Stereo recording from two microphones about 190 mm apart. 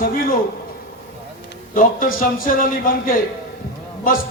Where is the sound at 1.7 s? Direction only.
45° left (ahead or behind).